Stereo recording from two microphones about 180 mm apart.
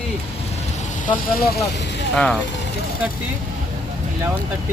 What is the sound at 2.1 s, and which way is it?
Speech, 5° left (ahead or behind).